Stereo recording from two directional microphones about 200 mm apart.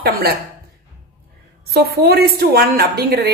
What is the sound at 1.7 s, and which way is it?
A woman's voice, 55° right (ahead or behind).